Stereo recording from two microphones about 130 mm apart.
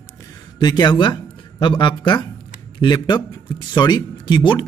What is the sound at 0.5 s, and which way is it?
Speech, 35° left (ahead or behind).